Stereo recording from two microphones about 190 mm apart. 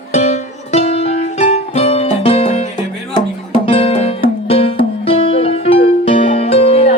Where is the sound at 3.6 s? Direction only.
30° left (ahead or behind).